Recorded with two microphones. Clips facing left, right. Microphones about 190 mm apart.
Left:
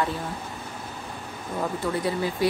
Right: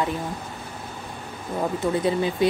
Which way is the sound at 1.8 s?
20° right (ahead or behind).